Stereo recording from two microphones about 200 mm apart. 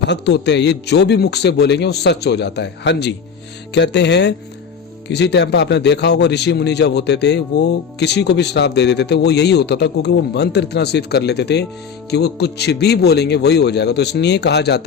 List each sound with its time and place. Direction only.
0.1 s speech: 60° left (ahead or behind)